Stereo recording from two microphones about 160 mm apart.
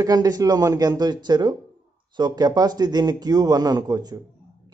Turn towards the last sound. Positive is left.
turn(degrees=-25)  # may be behind; listen again after turning